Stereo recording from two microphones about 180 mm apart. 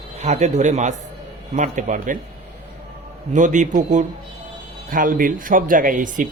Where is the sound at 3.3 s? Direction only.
45° right (ahead or behind).